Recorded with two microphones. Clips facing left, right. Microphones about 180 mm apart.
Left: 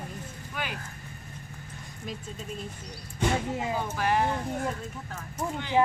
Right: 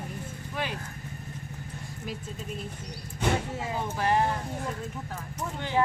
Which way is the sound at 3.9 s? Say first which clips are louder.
Right 2 dB; 30° right (ahead or behind).